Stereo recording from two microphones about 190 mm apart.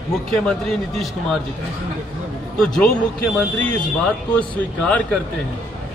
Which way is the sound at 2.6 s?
5° left (ahead or behind).